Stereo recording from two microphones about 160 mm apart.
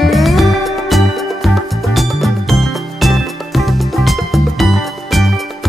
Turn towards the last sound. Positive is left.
turn(degrees=0)  # may be behind; listen again after turning